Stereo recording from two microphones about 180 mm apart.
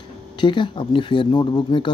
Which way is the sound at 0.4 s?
25° left (ahead or behind).